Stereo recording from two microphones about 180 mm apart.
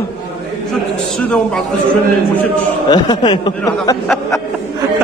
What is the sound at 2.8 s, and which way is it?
Speech, 25° left (ahead or behind).